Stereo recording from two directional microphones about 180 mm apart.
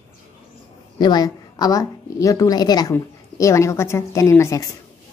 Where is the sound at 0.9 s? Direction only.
25° left (ahead or behind).